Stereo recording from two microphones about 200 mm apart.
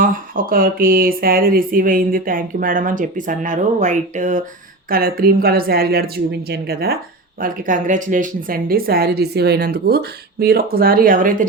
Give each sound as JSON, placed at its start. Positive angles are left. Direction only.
{"t": 0.0, "sound": "speech", "side_deg": -45}